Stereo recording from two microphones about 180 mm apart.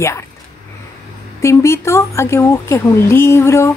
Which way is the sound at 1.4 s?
15° left (ahead or behind).